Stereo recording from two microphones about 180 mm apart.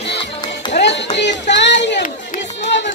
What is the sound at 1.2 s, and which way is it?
Music, 75° left (ahead or behind).